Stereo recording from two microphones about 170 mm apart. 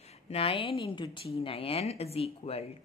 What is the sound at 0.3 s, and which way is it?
A woman's voice, 35° left (ahead or behind).